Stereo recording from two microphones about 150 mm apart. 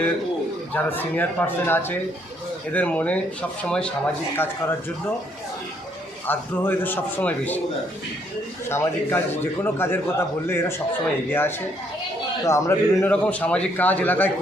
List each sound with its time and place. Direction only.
0.7 s a man's voice: 10° left (ahead or behind)
6.2 s a man's voice: 15° left (ahead or behind)
8.7 s a man's voice: 15° left (ahead or behind)